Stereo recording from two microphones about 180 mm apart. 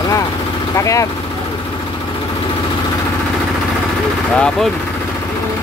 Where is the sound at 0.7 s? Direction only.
15° left (ahead or behind).